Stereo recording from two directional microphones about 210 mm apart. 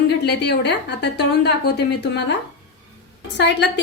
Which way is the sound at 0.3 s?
55° left (ahead or behind).